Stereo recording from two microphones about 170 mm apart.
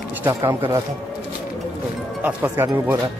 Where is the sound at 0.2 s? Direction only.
15° right (ahead or behind).